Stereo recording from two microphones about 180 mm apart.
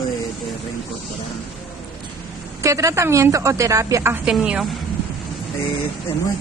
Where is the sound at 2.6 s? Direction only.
15° right (ahead or behind).